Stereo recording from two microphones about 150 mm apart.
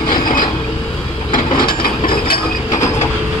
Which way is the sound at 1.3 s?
75° left (ahead or behind).